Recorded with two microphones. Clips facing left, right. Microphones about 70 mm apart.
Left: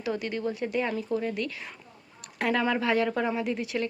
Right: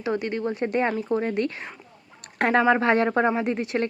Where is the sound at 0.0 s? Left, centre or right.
Right.